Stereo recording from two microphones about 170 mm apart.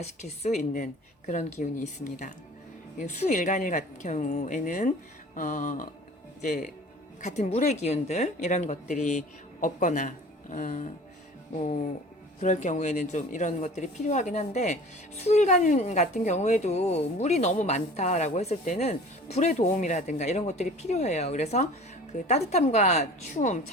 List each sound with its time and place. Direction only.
0.0 s a woman's voice: 40° left (ahead or behind)